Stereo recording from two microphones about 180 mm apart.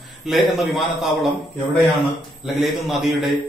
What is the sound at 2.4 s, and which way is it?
Speech, centre (ahead or behind).